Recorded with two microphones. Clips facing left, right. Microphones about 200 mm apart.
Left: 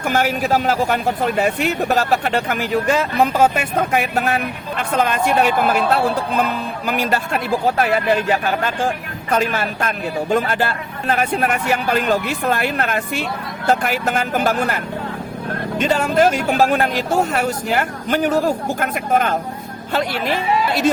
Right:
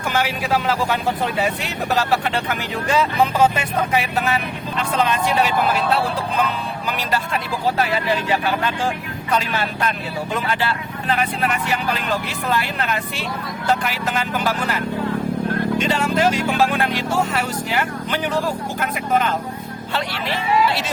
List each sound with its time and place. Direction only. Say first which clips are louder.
0.0 s speech: left 4 dB; 45° left (ahead or behind)
15.8 s speech: left 6 dB; 45° left (ahead or behind)